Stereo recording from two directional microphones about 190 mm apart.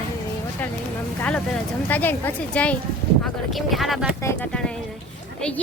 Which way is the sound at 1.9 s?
10° left (ahead or behind).